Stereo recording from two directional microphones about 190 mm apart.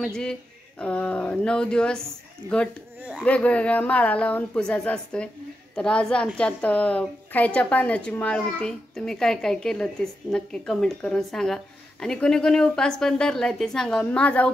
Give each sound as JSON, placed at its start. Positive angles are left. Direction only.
{"t": 0.0, "sound": "speech", "side_deg": 5}